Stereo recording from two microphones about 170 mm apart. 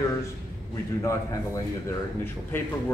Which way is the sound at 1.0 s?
15° left (ahead or behind).